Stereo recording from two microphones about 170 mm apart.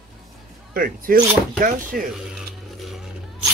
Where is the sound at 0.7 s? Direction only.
60° right (ahead or behind).